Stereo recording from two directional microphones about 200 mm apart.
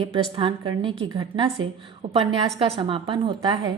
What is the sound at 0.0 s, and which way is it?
A woman's voice, 25° right (ahead or behind).